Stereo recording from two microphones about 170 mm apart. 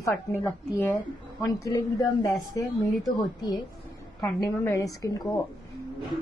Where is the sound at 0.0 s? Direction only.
15° left (ahead or behind).